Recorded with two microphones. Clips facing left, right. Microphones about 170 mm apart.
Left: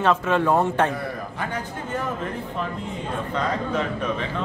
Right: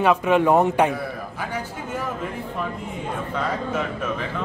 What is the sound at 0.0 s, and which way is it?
Speech, 15° right (ahead or behind).